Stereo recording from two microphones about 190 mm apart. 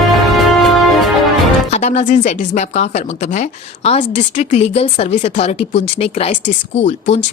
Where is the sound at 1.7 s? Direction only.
35° left (ahead or behind).